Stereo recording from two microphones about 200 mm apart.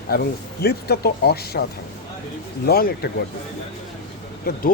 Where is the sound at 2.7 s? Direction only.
50° left (ahead or behind).